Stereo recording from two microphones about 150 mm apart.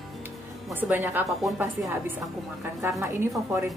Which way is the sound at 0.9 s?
15° right (ahead or behind).